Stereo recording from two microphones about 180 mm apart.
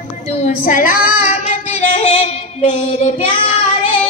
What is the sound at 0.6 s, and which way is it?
Child singing, 50° left (ahead or behind).